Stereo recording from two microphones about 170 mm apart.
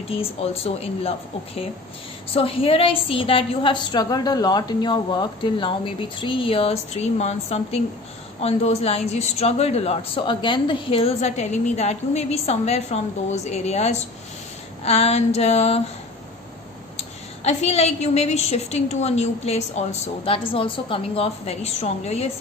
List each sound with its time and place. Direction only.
0.1 s speech: 35° left (ahead or behind)
16.9 s speech: 40° left (ahead or behind)